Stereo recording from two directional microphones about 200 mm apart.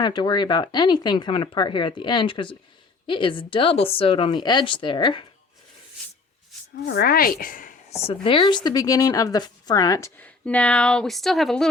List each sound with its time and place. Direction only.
0.0 s speech: 20° left (ahead or behind)
6.8 s speech: 50° left (ahead or behind)
8.0 s speech: 25° left (ahead or behind); by 11.7 s centre (ahead or behind)